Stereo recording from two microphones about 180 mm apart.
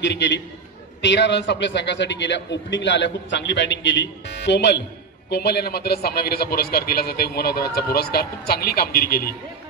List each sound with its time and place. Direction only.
0.0 s a man's voice: 80° left; by 9.3 s 55° left (ahead or behind)